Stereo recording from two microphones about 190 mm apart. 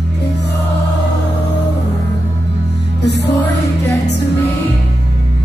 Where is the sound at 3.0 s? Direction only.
65° left (ahead or behind).